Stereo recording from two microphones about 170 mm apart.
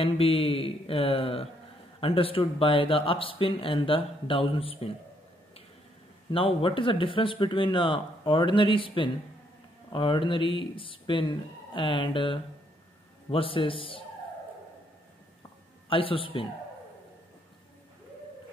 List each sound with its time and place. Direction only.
0.0 s speech: 35° left (ahead or behind)
6.3 s speech: 30° left (ahead or behind)
15.9 s speech: 30° left (ahead or behind)